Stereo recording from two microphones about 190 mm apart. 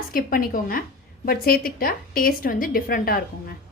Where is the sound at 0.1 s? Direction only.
50° left (ahead or behind).